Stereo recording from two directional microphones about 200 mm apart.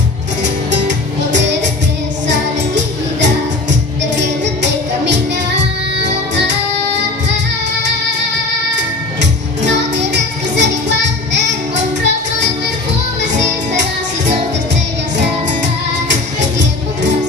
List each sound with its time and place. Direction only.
0.7 s music: 60° right (ahead or behind)
9.2 s music: 60° right (ahead or behind)
16.1 s music: 60° right (ahead or behind)